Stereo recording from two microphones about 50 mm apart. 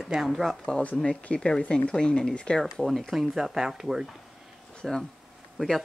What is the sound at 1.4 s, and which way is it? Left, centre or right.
Speech, centre.